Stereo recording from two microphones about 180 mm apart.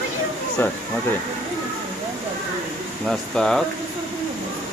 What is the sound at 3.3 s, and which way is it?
Speech, 5° left (ahead or behind).